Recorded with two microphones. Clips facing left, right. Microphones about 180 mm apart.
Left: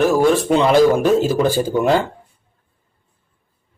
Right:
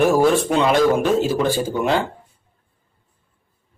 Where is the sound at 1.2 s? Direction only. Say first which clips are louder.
Left 3 dB; 40° left (ahead or behind).